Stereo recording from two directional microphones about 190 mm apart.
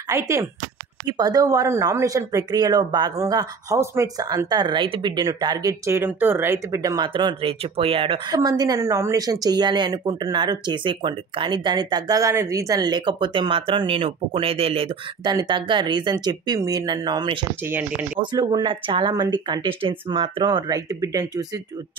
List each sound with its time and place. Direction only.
0.1 s speech: 15° right (ahead or behind)
17.6 s speech: 10° right (ahead or behind)
18.3 s speech: 25° right (ahead or behind)